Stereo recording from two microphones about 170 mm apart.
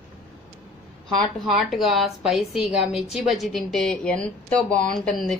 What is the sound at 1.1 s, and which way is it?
Speech, centre (ahead or behind).